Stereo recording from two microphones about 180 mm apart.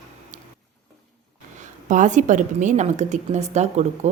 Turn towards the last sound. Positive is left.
turn(degrees=-40)  # may be behind; listen again after turning